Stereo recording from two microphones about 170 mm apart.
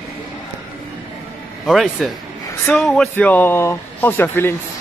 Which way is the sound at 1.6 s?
Centre (ahead or behind).